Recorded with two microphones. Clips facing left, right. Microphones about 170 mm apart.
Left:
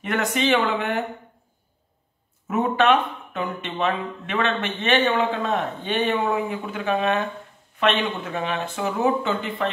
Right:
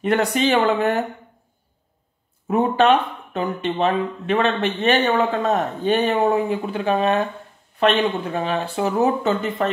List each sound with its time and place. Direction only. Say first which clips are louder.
0.0 s speech: right 4 dB; 35° right (ahead or behind)
2.4 s speech: right 3 dB; 35° right (ahead or behind)